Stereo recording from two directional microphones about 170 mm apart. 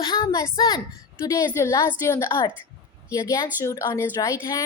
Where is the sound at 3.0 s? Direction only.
20° left (ahead or behind).